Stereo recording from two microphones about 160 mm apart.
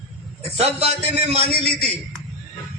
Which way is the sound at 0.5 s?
40° right (ahead or behind).